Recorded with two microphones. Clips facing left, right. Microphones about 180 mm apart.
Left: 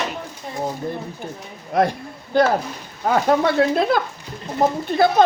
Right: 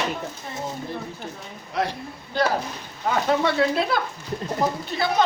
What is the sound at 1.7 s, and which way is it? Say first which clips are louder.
Speech: left 7 dB; 50° left (ahead or behind).